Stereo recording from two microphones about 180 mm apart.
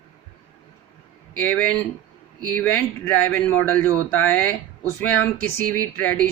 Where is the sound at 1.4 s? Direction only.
10° left (ahead or behind).